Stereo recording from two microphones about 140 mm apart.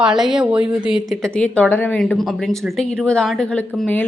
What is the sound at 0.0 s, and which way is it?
A woman's voice, 5° right (ahead or behind).